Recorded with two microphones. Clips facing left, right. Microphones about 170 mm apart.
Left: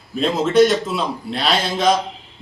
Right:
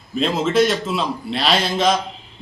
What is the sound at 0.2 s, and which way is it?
A man's voice, centre (ahead or behind).